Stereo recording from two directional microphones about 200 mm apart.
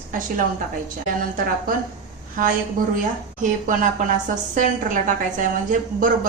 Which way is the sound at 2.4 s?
45° right (ahead or behind).